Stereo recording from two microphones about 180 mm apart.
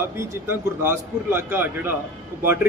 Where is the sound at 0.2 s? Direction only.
15° right (ahead or behind).